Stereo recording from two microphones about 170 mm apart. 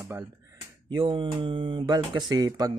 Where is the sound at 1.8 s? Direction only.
25° right (ahead or behind).